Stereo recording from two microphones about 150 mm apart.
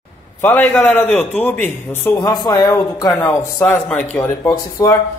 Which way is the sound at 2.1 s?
30° left (ahead or behind).